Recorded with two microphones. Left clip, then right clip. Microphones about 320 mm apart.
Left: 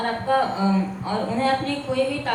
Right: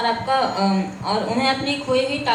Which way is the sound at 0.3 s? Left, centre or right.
Right.